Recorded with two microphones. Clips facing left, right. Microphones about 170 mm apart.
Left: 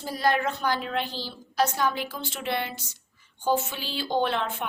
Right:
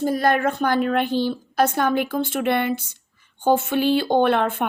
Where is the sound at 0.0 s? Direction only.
50° right (ahead or behind).